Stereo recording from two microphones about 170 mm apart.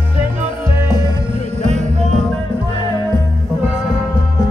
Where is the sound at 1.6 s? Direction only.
45° right (ahead or behind).